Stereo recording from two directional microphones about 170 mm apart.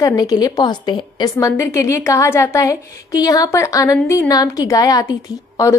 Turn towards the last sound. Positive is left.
turn(degrees=20)  # may be behind; listen again after turning